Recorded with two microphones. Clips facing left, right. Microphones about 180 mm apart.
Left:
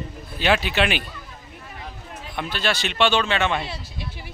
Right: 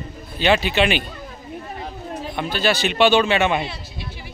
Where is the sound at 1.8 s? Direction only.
35° right (ahead or behind).